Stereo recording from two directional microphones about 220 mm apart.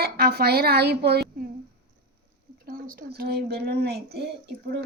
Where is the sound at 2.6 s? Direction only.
40° right (ahead or behind).